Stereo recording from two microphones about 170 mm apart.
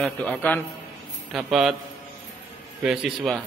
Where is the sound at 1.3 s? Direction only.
Centre (ahead or behind).